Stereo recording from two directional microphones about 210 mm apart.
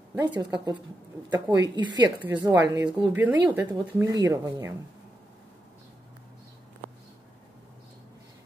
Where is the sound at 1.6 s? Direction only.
20° right (ahead or behind).